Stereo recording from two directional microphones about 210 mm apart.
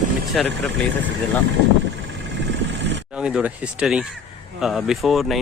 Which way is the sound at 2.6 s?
55° right (ahead or behind).